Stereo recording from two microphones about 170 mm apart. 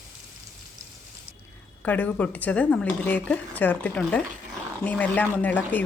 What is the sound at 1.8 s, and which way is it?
A woman's voice, 10° left (ahead or behind).